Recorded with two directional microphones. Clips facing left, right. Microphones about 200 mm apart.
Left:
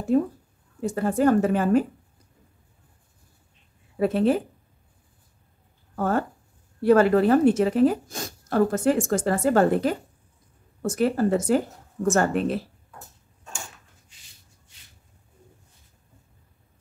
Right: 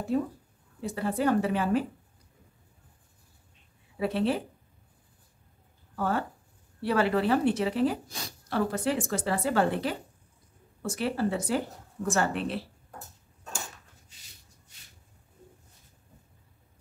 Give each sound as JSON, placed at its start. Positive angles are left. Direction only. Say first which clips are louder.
{"t": 0.1, "sound": "a woman's voice", "louder": "left 8 dB", "side_deg": 50}
{"t": 3.9, "sound": "a woman's voice", "louder": "left 6 dB", "side_deg": 45}
{"t": 5.9, "sound": "a woman's voice", "louder": "left 5 dB", "side_deg": 45}